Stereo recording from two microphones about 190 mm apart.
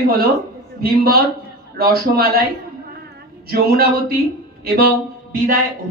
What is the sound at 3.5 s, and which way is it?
Speech, 55° right (ahead or behind).